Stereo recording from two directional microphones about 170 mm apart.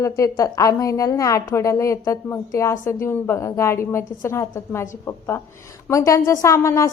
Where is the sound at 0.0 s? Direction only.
20° left (ahead or behind).